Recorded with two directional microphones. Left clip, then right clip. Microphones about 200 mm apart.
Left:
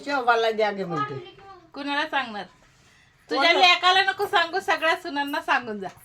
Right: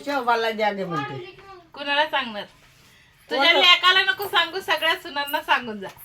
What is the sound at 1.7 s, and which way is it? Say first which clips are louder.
A woman's voice: right 4 dB; 60° left (ahead or behind).